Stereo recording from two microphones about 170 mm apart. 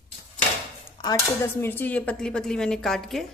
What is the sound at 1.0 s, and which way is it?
Speech, 15° left (ahead or behind).